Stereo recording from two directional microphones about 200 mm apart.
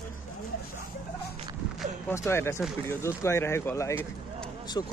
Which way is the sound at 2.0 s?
15° left (ahead or behind).